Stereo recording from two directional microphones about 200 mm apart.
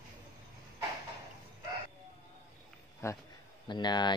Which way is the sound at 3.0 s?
15° left (ahead or behind).